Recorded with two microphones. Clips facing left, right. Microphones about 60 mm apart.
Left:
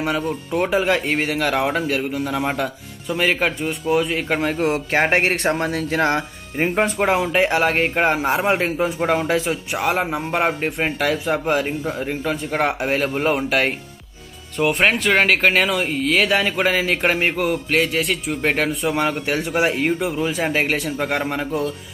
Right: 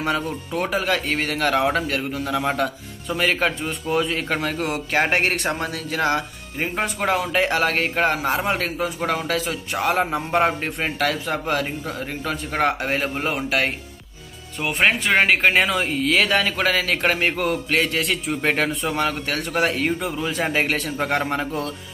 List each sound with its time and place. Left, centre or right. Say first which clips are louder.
0.6 s a man's voice: left 4 dB; centre
4.4 s speech: left 4 dB; left
9.7 s a man's voice: right 3 dB; centre
16.4 s a man's voice: left 2 dB; centre
17.4 s a man's voice: left 2 dB; centre
18.9 s a man's voice: left 3 dB; centre